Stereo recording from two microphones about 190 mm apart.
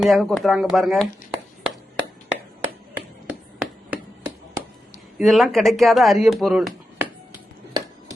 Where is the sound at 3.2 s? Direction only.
5° right (ahead or behind).